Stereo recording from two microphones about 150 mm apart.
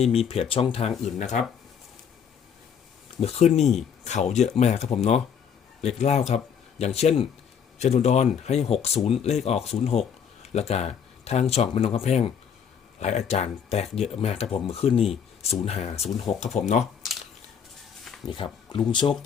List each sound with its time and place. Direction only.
0.0 s speech: 40° left (ahead or behind)
3.2 s speech: 45° left (ahead or behind)
18.3 s speech: 30° left (ahead or behind)